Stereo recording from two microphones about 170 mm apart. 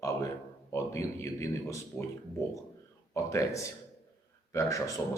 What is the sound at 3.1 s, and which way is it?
Speech, 20° left (ahead or behind).